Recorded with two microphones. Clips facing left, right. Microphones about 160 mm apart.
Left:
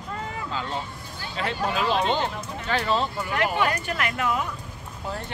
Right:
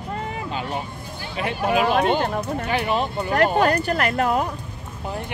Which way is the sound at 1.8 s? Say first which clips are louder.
Right 4 dB; 55° right (ahead or behind).